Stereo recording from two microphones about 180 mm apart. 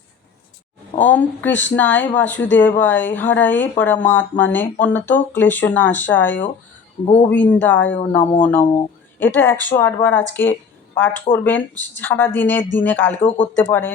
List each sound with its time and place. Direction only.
0.9 s speech: 10° left (ahead or behind)
7.0 s a man's voice: 35° left (ahead or behind)
7.3 s speech: 10° left (ahead or behind)